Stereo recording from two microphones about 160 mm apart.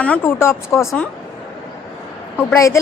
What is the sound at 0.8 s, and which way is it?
Speech, centre (ahead or behind).